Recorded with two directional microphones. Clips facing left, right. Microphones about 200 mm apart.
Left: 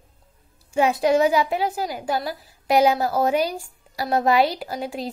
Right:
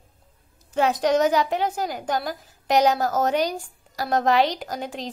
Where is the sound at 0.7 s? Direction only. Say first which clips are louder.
Left 2 dB; 10° left (ahead or behind).